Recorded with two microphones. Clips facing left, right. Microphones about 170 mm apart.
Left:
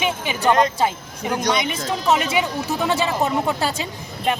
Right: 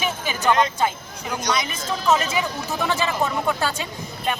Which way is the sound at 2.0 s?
15° left (ahead or behind).